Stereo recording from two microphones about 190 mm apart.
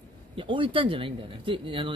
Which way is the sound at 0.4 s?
25° right (ahead or behind).